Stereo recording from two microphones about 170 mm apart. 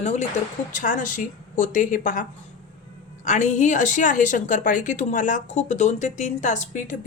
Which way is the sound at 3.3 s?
45° left (ahead or behind).